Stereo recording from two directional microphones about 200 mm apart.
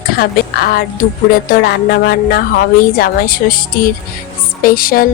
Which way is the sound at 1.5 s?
50° left (ahead or behind).